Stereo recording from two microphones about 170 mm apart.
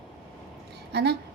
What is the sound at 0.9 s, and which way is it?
Speech, 80° right.